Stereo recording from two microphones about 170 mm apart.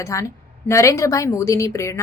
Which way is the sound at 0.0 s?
20° left (ahead or behind).